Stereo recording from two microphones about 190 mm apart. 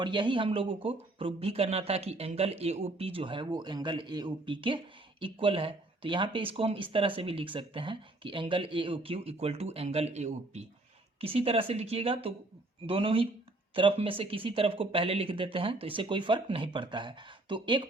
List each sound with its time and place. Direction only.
0.0 s speech: 25° right (ahead or behind)